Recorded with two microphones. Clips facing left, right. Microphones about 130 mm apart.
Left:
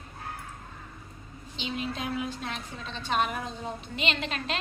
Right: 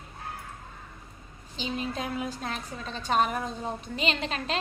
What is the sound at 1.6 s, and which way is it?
A woman's voice, 40° right (ahead or behind).